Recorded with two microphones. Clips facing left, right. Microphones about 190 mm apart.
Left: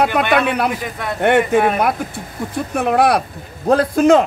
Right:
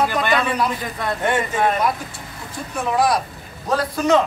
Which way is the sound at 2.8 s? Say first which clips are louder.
Left 4 dB; 60° left (ahead or behind).